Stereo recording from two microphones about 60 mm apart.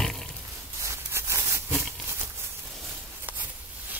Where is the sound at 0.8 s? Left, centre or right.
Right.